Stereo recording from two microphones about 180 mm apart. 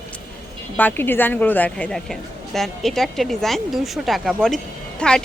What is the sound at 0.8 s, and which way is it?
A woman's voice, 10° left (ahead or behind).